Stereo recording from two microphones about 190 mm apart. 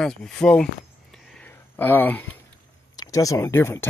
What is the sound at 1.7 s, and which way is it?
A man's voice, 10° left (ahead or behind).